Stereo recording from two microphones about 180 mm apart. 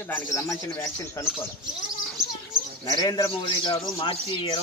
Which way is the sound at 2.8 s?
20° left (ahead or behind).